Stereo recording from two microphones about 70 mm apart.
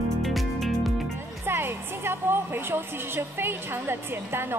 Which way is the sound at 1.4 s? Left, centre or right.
Right.